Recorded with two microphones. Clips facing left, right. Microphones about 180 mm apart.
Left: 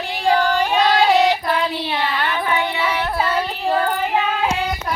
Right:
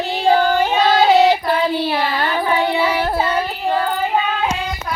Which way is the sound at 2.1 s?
35° right (ahead or behind).